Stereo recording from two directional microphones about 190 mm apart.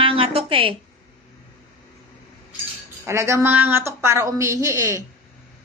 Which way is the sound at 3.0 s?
15° right (ahead or behind).